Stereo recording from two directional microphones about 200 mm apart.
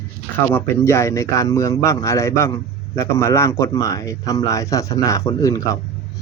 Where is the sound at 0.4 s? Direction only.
10° left (ahead or behind).